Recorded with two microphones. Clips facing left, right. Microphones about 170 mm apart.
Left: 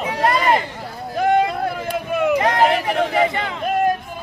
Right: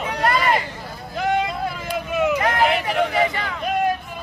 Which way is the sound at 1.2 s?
50° left (ahead or behind).